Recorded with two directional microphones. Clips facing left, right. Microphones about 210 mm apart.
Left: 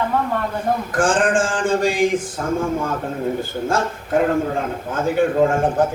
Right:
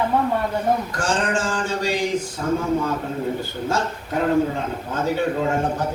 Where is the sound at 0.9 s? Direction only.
50° left (ahead or behind).